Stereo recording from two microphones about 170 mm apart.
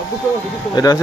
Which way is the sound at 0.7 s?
20° left (ahead or behind).